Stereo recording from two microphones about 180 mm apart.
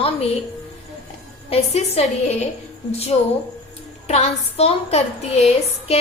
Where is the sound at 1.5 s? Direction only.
35° left (ahead or behind).